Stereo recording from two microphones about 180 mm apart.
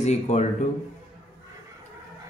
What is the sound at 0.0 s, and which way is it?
Speech, 40° left (ahead or behind).